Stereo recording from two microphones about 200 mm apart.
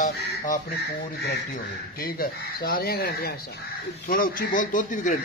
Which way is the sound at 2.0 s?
50° left (ahead or behind).